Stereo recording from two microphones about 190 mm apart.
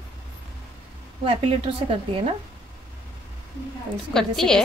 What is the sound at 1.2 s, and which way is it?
A woman's voice, 30° right (ahead or behind).